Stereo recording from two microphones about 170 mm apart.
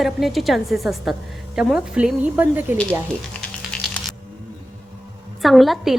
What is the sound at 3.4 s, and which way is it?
Computer keyboard, 5° left (ahead or behind).